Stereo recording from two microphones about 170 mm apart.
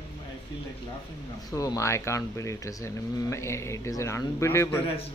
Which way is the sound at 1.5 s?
20° left (ahead or behind).